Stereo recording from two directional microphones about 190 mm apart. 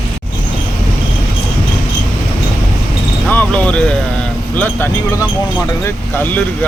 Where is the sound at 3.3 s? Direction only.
10° left (ahead or behind).